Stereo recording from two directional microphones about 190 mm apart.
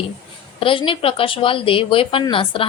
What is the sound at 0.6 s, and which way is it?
Speech, 25° left (ahead or behind).